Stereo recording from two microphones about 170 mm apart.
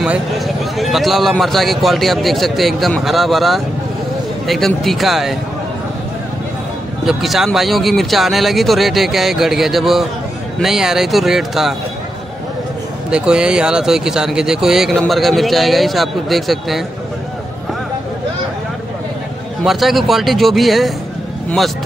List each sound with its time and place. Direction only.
0.0 s speech: 5° right (ahead or behind)
7.1 s speech: centre (ahead or behind)
13.1 s speech: 5° right (ahead or behind)
19.6 s speech: centre (ahead or behind)